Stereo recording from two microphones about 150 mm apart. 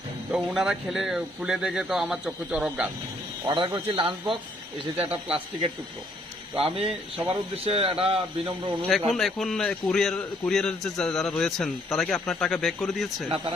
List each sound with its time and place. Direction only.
0.3 s a man's voice: 5° right (ahead or behind)
3.4 s a man's voice: 30° right (ahead or behind)
6.6 s a man's voice: 40° right (ahead or behind)
8.9 s a man's voice: centre (ahead or behind)